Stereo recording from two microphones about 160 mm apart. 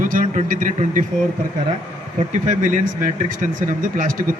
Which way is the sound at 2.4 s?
55° right (ahead or behind).